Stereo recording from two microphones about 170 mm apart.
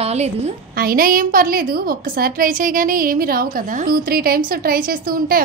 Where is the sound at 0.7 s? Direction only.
60° right (ahead or behind).